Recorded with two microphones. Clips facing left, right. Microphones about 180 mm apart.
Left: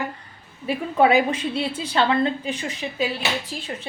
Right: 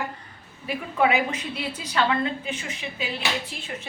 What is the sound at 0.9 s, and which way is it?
A woman's voice, 35° left (ahead or behind).